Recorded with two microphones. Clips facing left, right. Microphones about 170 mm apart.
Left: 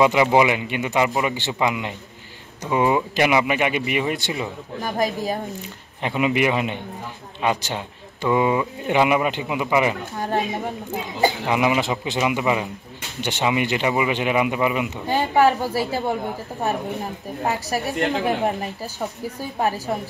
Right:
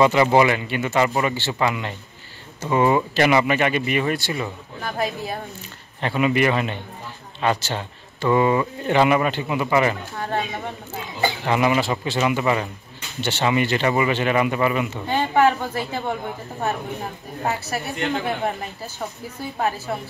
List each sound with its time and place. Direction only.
0.0 s speech: 10° left (ahead or behind)
4.9 s speech: 40° left (ahead or behind)
5.9 s speech: 15° left (ahead or behind)
11.4 s speech: 10° left (ahead or behind)
17.5 s speech: 15° left (ahead or behind)